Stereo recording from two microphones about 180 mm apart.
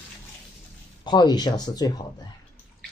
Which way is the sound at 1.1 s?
25° left (ahead or behind).